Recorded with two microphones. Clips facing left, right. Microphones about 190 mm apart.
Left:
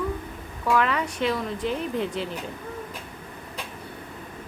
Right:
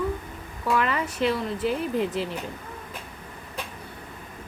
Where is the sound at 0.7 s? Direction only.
5° right (ahead or behind).